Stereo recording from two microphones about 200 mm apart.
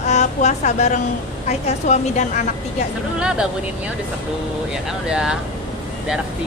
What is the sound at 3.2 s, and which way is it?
Speech, 5° right (ahead or behind).